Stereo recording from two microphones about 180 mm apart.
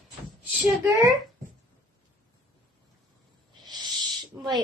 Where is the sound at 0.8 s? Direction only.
20° right (ahead or behind).